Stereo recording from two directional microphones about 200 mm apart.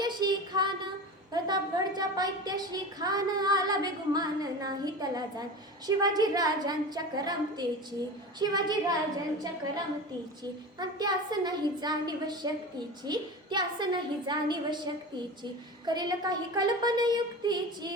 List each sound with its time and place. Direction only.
0.0 s a sound: 20° right (ahead or behind)
1.3 s a woman's voice: 20° right (ahead or behind)
2.0 s female singing: 20° right (ahead or behind)
10.8 s female singing: 20° right (ahead or behind)
15.9 s female singing: 20° right (ahead or behind)